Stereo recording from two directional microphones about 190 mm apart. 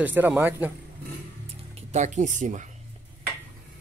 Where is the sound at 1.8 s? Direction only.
35° right (ahead or behind).